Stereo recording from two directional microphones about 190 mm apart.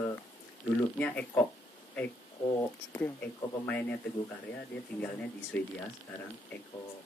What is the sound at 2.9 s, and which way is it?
Speech, 10° left (ahead or behind).